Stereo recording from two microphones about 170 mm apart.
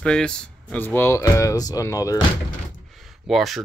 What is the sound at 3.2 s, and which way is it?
Speech, centre (ahead or behind).